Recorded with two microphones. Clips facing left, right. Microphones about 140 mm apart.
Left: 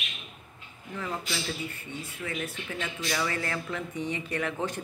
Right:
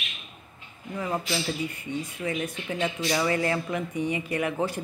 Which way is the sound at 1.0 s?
15° right (ahead or behind).